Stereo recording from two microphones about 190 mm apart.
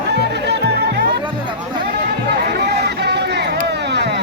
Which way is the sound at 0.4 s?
60° right (ahead or behind).